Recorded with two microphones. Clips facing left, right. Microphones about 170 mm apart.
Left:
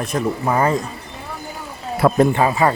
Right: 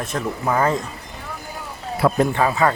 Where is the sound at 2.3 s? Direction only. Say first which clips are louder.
Left 2 dB; 15° left (ahead or behind).